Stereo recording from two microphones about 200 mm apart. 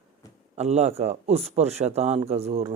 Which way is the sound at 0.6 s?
35° right (ahead or behind).